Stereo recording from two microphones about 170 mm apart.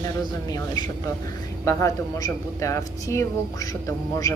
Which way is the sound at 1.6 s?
20° left (ahead or behind).